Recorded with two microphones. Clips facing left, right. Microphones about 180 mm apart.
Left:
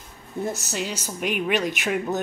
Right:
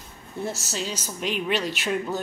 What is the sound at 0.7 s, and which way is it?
Speech, 10° left (ahead or behind).